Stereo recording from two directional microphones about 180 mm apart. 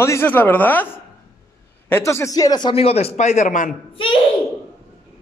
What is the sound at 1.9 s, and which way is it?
Speech, 15° left (ahead or behind).